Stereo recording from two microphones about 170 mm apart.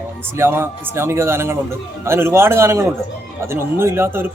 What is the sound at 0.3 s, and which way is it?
Speech, 15° right (ahead or behind).